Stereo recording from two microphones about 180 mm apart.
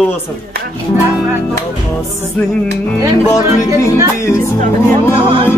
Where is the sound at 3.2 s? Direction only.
15° left (ahead or behind).